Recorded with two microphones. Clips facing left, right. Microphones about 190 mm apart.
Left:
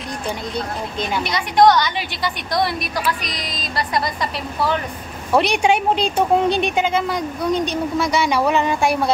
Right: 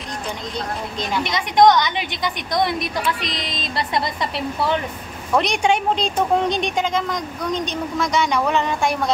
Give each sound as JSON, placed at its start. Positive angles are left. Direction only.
{"t": 1.2, "sound": "a woman's voice", "side_deg": -20}
{"t": 5.3, "sound": "a woman's voice", "side_deg": 5}